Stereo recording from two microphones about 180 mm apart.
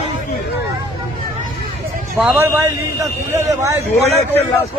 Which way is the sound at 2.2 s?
10° right (ahead or behind).